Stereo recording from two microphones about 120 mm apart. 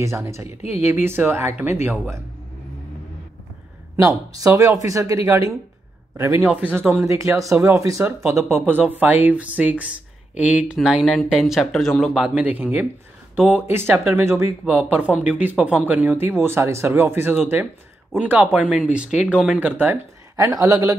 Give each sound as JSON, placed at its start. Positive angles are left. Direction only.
{"t": 0.0, "sound": "speech", "side_deg": -25}
{"t": 0.6, "sound": "speech", "side_deg": 65}
{"t": 1.0, "sound": "speech", "side_deg": -20}
{"t": 3.9, "sound": "speech", "side_deg": -25}
{"t": 6.4, "sound": "speech", "side_deg": -15}
{"t": 12.2, "sound": "speech", "side_deg": -10}
{"t": 19.7, "sound": "speech", "side_deg": -15}